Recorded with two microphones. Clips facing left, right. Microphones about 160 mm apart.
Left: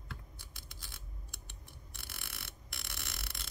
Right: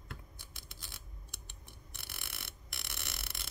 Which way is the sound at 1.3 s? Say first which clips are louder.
Even; 20° right (ahead or behind).